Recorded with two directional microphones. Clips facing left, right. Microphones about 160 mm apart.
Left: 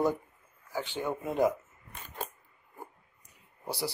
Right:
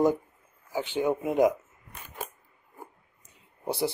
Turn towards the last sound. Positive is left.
turn(degrees=-25)  # may be behind; listen again after turning